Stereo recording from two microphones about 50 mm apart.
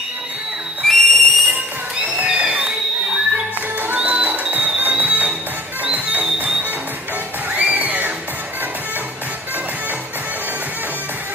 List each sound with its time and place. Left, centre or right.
0.8 s whistle: centre
2.2 s music: right
3.9 s music: right
7.5 s music: right